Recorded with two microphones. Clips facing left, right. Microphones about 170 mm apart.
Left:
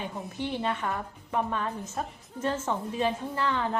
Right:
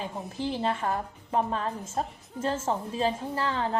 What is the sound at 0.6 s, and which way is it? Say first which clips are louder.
A woman's voice: right 2 dB; 35° right (ahead or behind).